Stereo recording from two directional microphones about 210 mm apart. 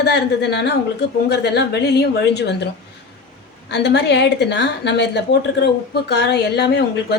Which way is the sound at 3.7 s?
55° left (ahead or behind).